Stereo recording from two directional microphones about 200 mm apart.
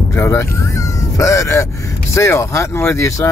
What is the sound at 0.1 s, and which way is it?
Speech, 15° left (ahead or behind).